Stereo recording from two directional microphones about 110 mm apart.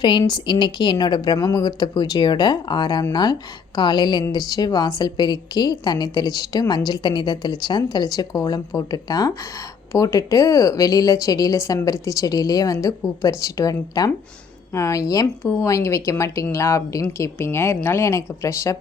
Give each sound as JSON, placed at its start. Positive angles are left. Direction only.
{"t": 0.0, "sound": "a woman's voice", "side_deg": 45}